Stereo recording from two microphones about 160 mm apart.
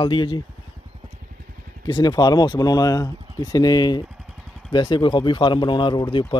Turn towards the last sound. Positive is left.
turn(degrees=30)  # may be behind; listen again after turning